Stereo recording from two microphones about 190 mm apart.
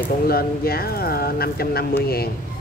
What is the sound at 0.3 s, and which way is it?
A man's voice, 55° left (ahead or behind).